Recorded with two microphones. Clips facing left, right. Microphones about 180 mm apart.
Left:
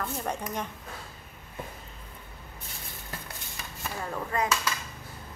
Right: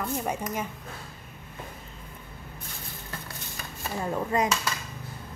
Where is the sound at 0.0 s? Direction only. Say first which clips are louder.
Right 3 dB; 10° right (ahead or behind).